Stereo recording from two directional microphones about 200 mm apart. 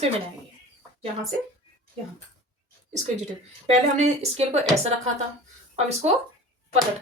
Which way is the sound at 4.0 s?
35° right (ahead or behind).